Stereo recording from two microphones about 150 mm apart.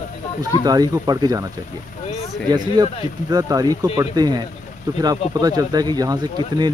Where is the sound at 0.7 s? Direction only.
25° right (ahead or behind).